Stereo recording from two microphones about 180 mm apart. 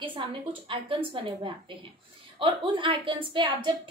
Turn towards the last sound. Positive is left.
turn(degrees=-30)  # may be behind; listen again after turning